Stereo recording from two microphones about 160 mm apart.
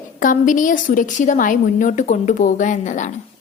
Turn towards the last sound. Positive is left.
turn(degrees=50)  # may be behind; listen again after turning